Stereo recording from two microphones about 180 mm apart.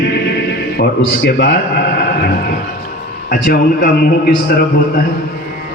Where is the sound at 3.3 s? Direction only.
50° left (ahead or behind).